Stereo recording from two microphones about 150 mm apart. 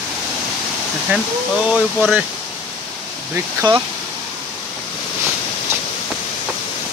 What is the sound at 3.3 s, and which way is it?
Speech, 20° right (ahead or behind).